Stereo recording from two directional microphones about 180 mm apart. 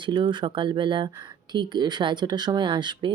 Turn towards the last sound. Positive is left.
turn(degrees=-25)  # may be behind; listen again after turning